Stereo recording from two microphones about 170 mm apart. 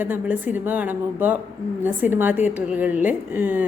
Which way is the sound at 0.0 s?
10° right (ahead or behind).